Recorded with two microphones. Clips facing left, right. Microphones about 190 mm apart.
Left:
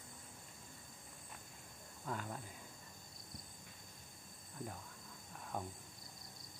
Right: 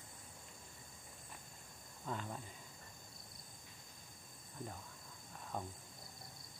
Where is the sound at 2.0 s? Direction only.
Centre (ahead or behind).